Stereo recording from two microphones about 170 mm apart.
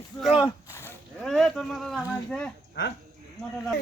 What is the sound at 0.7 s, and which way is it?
Livestock, 15° left (ahead or behind).